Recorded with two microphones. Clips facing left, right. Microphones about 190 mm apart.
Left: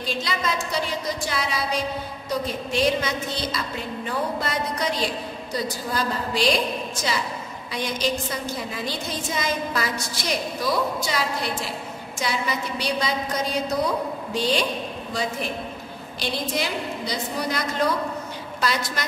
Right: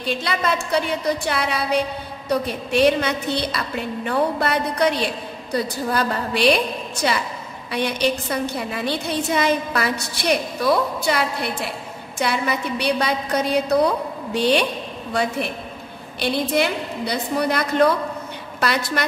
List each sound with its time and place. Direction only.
0.0 s a woman's voice: 60° right (ahead or behind)